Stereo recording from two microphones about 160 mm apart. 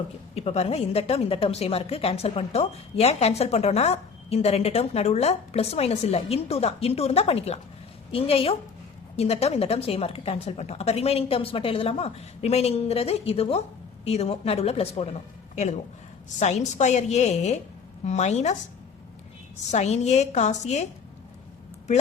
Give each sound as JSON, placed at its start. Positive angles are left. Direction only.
{"t": 0.3, "sound": "a woman's voice", "side_deg": 40}
{"t": 16.4, "sound": "a woman's voice", "side_deg": 45}
{"t": 19.7, "sound": "a woman's voice", "side_deg": 45}